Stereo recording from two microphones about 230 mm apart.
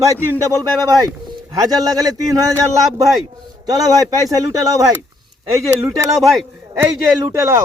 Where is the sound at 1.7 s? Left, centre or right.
Centre.